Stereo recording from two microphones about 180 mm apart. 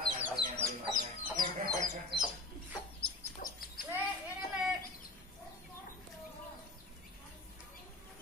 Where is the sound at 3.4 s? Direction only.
50° left (ahead or behind).